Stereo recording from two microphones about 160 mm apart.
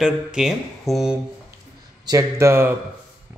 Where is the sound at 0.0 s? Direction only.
5° right (ahead or behind).